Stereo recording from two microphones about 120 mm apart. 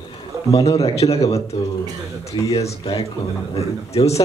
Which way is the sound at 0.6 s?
60° left (ahead or behind).